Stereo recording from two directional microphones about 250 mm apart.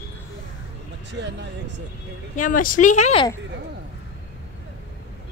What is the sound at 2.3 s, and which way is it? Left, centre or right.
Speech, left.